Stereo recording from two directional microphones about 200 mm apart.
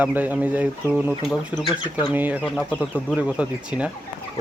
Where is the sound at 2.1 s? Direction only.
10° right (ahead or behind).